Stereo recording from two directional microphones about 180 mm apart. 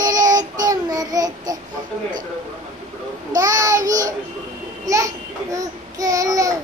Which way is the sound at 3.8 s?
45° right (ahead or behind).